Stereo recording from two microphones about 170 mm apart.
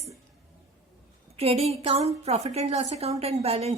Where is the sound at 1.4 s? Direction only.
35° right (ahead or behind).